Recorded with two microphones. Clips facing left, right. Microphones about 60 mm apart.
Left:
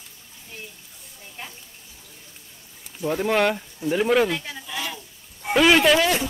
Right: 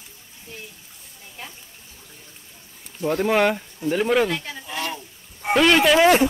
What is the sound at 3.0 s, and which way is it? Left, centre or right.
Speech, centre.